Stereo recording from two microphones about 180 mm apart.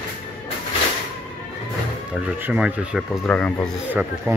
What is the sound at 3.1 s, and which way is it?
Speech, 5° left (ahead or behind).